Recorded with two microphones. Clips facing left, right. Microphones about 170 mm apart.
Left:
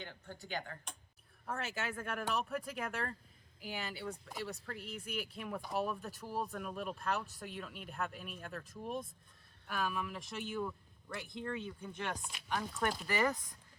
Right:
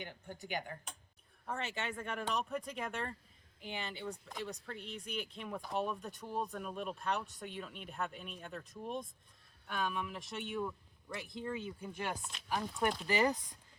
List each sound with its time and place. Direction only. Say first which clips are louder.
0.0 s speech: right 2 dB; 15° right (ahead or behind)
1.5 s speech: even; centre (ahead or behind); by 13.4 s 20° right (ahead or behind)